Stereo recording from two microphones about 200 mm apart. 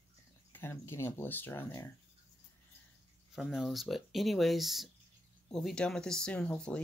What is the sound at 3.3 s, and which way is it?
Speech, centre (ahead or behind).